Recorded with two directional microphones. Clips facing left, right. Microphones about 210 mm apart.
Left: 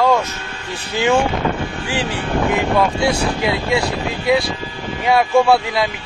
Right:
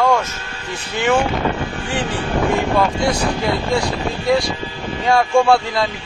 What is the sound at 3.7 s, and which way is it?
A man's voice, 5° left (ahead or behind).